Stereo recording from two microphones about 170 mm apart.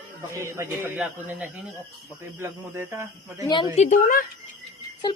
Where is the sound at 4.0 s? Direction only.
55° left (ahead or behind).